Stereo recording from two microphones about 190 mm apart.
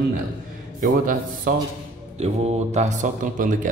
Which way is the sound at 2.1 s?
35° right (ahead or behind).